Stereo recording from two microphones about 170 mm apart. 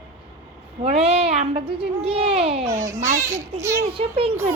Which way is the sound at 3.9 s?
35° right (ahead or behind).